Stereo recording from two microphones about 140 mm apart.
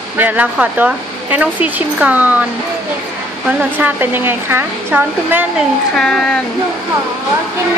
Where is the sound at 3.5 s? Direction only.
10° right (ahead or behind).